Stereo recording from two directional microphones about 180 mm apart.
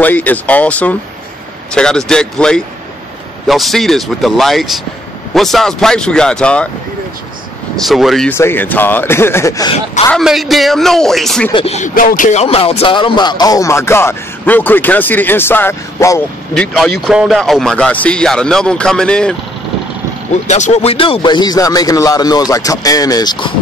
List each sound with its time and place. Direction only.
0.0 s speech: 10° left (ahead or behind)
7.7 s speech: centre (ahead or behind)
8.3 s speech: 10° left (ahead or behind)
10.2 s speech: centre (ahead or behind)
11.5 s speech: 35° left (ahead or behind)
11.9 s speech: 50° left (ahead or behind); by 16.2 s 15° left (ahead or behind)
16.5 s speech: centre (ahead or behind)
20.4 s speech: 40° left (ahead or behind); by 23.5 s 20° left (ahead or behind)